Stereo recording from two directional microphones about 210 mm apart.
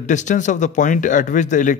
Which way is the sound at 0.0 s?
35° left (ahead or behind).